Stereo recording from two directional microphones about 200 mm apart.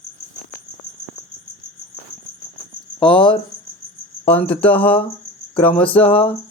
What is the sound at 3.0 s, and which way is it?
Speech, 25° left (ahead or behind).